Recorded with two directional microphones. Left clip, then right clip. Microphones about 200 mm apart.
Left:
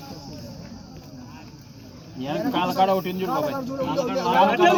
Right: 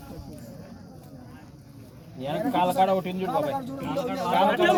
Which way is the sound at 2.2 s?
60° right (ahead or behind).